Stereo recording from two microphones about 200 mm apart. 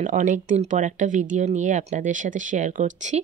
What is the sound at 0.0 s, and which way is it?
Speech, 40° right (ahead or behind).